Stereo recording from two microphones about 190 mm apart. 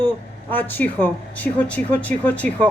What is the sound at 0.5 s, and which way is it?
Speech, 10° left (ahead or behind).